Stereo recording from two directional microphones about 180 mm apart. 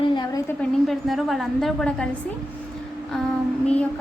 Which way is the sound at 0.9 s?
Centre (ahead or behind).